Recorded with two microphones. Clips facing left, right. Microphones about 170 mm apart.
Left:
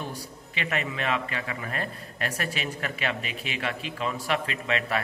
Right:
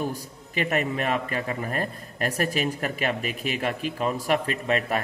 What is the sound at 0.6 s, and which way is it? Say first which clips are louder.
A man's voice: right 5 dB; 45° right (ahead or behind).